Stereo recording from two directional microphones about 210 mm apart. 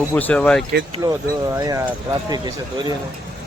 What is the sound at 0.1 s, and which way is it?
Speech, 10° left (ahead or behind).